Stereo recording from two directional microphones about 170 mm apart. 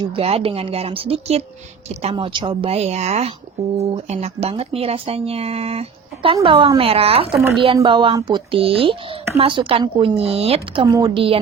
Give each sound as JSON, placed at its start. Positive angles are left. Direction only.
{"t": 0.2, "sound": "a woman's voice", "side_deg": -35}